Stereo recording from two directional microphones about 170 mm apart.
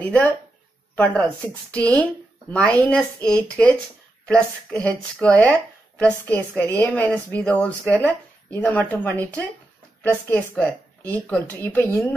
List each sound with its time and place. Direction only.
0.0 s speech: 10° left (ahead or behind)